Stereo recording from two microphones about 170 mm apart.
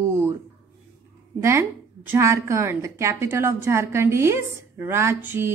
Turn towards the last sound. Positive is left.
turn(degrees=-15)  # may be behind; listen again after turning